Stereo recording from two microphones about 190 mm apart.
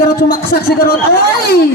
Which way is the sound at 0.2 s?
55° left (ahead or behind).